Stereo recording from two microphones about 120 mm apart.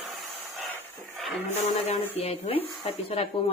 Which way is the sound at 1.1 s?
Centre (ahead or behind).